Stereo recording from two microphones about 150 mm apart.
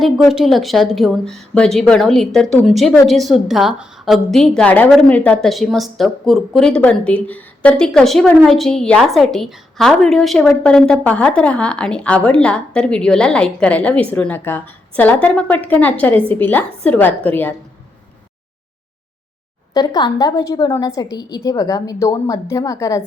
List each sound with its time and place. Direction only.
0.0 s a woman's voice: centre (ahead or behind)
19.7 s a woman's voice: 25° left (ahead or behind)